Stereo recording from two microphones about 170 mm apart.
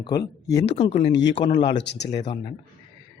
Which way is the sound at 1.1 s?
90° left.